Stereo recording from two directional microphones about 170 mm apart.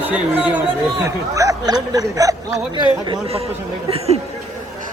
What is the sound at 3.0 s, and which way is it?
Speech, 30° right (ahead or behind).